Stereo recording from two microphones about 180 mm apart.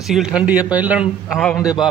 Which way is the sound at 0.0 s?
5° right (ahead or behind).